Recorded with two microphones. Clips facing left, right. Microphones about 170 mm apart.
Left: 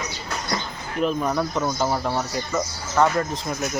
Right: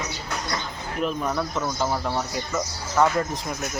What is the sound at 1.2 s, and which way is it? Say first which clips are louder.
Speech: left 3 dB; 15° left (ahead or behind).